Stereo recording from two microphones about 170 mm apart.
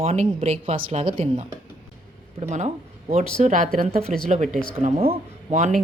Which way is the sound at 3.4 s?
45° right (ahead or behind).